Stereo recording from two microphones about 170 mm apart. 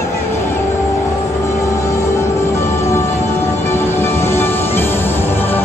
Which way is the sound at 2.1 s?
15° left (ahead or behind).